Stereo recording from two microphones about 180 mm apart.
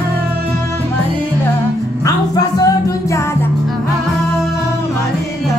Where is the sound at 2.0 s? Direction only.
20° left (ahead or behind).